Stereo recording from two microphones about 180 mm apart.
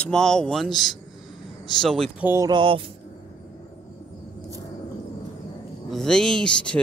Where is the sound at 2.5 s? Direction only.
25° right (ahead or behind).